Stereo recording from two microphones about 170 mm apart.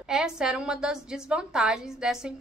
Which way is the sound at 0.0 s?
5° right (ahead or behind).